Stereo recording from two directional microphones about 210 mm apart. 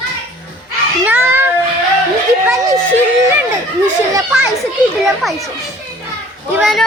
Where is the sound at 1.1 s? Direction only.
10° right (ahead or behind).